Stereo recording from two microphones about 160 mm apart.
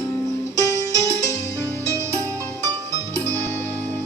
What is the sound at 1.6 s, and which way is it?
Music, 20° right (ahead or behind).